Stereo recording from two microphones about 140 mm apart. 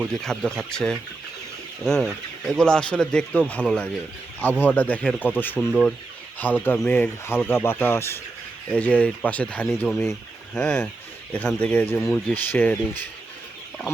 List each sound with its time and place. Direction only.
0.0 s speech: 5° left (ahead or behind)